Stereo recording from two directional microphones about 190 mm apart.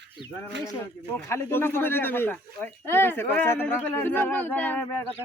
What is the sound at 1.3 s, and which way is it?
Speech, 10° left (ahead or behind).